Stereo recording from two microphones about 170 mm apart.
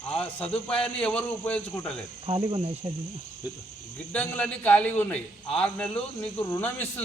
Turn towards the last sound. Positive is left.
turn(degrees=10)  # may be behind; listen again after turning